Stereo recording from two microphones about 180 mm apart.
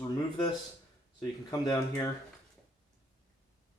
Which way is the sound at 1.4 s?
20° left (ahead or behind).